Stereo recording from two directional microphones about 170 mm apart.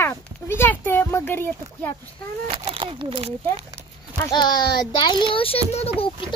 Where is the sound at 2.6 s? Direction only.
35° right (ahead or behind).